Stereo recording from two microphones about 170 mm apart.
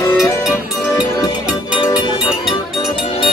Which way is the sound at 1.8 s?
25° left (ahead or behind).